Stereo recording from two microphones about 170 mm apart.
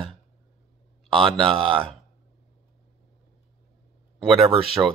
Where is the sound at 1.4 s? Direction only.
30° right (ahead or behind).